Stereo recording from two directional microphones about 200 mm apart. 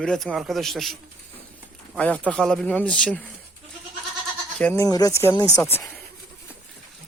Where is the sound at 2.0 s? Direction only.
5° left (ahead or behind).